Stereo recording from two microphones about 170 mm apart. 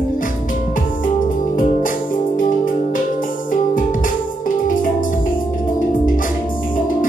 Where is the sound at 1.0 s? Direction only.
50° left (ahead or behind).